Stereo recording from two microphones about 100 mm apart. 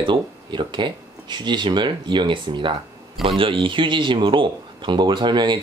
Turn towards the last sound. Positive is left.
turn(degrees=-50)  # may be behind; listen again after turning